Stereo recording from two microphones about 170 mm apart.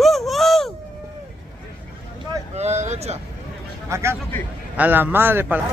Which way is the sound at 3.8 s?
15° right (ahead or behind).